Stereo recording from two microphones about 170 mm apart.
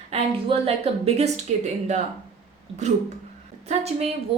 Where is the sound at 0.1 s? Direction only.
35° right (ahead or behind).